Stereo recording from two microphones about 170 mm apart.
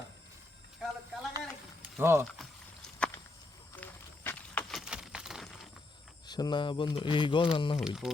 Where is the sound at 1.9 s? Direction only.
15° right (ahead or behind).